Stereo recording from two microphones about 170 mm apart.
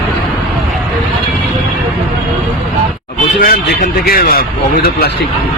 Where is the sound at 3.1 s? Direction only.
55° left (ahead or behind).